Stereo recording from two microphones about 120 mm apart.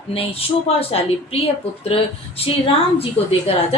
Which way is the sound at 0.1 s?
55° left (ahead or behind).